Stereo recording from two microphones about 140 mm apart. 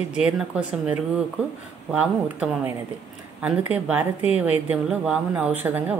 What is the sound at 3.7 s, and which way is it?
Speech, 10° right (ahead or behind).